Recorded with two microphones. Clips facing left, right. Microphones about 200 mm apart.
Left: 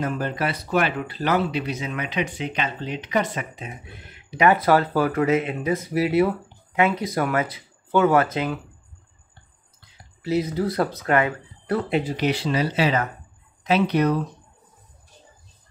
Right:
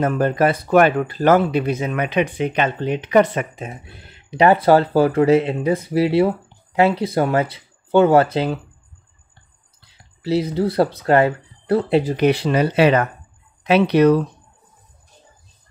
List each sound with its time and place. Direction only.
0.0 s speech: 50° right (ahead or behind)
4.1 s speech: 30° right (ahead or behind)
9.8 s speech: 30° right (ahead or behind); by 13.1 s 65° right (ahead or behind)
13.7 s speech: 75° right (ahead or behind)